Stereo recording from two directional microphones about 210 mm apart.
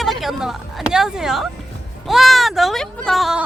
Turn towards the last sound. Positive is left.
turn(degrees=0)  # may be behind; listen again after turning